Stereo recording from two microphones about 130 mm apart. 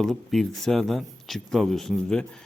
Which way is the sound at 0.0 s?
Centre (ahead or behind).